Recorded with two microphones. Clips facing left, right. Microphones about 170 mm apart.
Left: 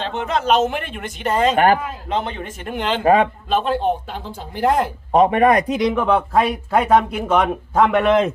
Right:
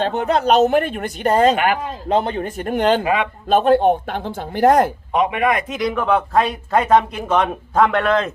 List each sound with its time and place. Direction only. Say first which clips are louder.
0.0 s speech: right 4 dB; 40° right (ahead or behind)
1.5 s speech: left 4 dB; 45° left (ahead or behind)
2.0 s speech: right 6 dB; 35° right (ahead or behind)
3.0 s speech: left 5 dB; 40° left (ahead or behind)
3.5 s speech: right 8 dB; 50° right (ahead or behind)
5.1 s speech: left 5 dB; 40° left (ahead or behind)
5.8 s speech: left 1 dB; 15° left (ahead or behind)